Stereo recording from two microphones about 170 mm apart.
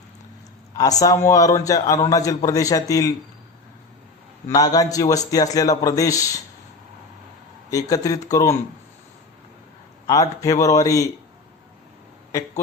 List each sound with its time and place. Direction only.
0.8 s a man's voice: 20° left (ahead or behind)
4.4 s a man's voice: 20° left (ahead or behind)
7.7 s a man's voice: 20° left (ahead or behind)
10.1 s a man's voice: 20° left (ahead or behind)